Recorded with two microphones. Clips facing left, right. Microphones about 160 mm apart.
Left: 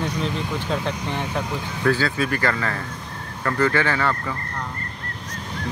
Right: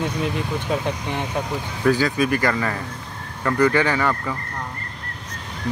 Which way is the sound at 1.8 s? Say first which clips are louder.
Right 3 dB; 15° right (ahead or behind).